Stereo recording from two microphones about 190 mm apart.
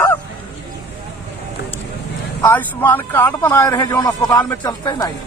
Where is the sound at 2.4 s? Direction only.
10° left (ahead or behind).